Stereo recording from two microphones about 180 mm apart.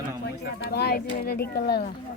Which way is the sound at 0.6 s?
65° left (ahead or behind).